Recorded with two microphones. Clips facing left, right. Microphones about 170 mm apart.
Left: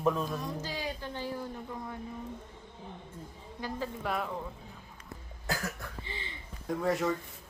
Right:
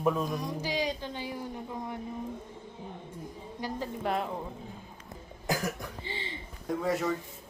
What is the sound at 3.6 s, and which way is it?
Speech, 15° right (ahead or behind).